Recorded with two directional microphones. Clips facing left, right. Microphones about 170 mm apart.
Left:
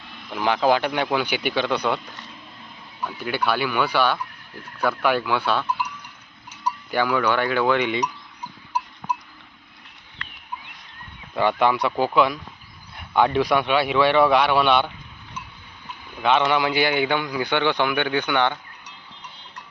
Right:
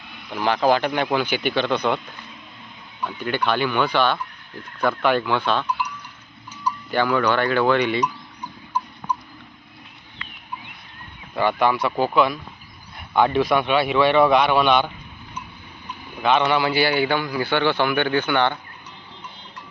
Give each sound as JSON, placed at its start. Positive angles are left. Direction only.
{"t": 0.7, "sound": "a man's voice", "side_deg": 5}
{"t": 3.0, "sound": "a man's voice", "side_deg": 5}
{"t": 6.9, "sound": "a man's voice", "side_deg": 10}
{"t": 11.3, "sound": "a man's voice", "side_deg": 15}
{"t": 13.4, "sound": "a man's voice", "side_deg": 15}
{"t": 14.1, "sound": "speech", "side_deg": -15}
{"t": 16.1, "sound": "a man's voice", "side_deg": -10}
{"t": 16.5, "sound": "a man's voice", "side_deg": 15}